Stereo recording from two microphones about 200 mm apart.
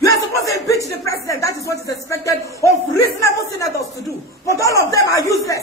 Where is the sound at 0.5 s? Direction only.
15° left (ahead or behind).